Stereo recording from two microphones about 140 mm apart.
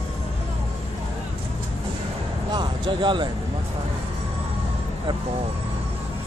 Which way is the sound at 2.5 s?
35° right (ahead or behind).